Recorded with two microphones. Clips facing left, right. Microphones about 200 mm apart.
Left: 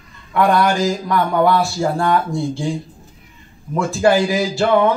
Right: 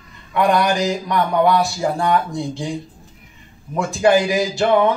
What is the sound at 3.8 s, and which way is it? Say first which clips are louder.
Speech: even; 15° right (ahead or behind).